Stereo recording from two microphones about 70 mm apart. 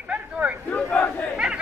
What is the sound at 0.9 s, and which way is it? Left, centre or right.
Battle cry, centre.